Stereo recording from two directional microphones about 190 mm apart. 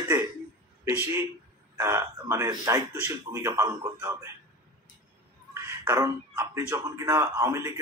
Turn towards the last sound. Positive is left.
turn(degrees=-15)  # may be behind; listen again after turning